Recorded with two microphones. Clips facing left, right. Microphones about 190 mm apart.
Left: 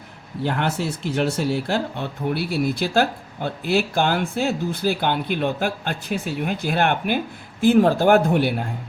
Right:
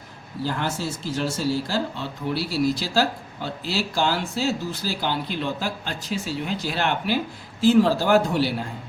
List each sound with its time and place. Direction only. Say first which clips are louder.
0.4 s speech: left 3 dB; 60° left (ahead or behind)